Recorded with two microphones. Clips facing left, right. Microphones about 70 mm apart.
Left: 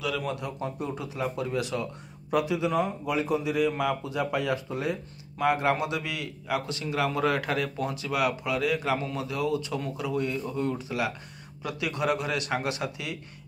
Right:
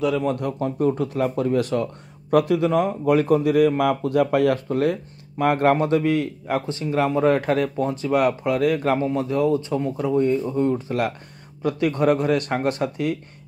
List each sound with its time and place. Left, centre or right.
0.0 s speech: right
0.4 s a man's voice: right
9.0 s speech: right